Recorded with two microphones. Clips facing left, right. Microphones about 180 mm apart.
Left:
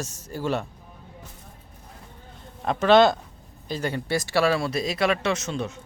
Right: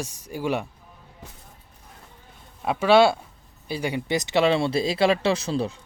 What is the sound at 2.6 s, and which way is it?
Speech, 10° right (ahead or behind).